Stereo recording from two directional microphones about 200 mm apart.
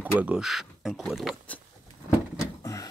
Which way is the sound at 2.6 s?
15° left (ahead or behind).